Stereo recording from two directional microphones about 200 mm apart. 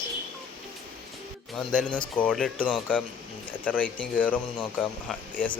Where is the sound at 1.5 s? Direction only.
5° left (ahead or behind).